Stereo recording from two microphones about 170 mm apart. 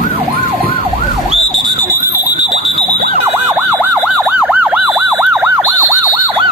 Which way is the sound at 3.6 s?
10° right (ahead or behind).